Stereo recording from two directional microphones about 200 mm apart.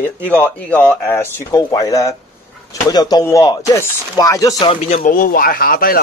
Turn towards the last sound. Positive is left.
turn(degrees=50)  # may be behind; listen again after turning